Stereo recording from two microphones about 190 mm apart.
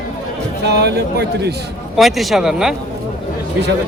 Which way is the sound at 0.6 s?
60° right (ahead or behind).